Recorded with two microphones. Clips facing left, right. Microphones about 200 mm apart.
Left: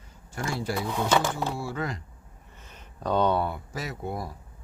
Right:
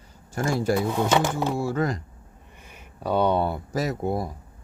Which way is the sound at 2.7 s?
10° right (ahead or behind).